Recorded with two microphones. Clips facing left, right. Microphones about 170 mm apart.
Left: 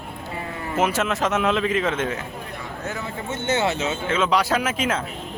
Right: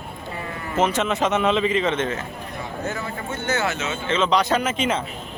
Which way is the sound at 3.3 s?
25° left (ahead or behind).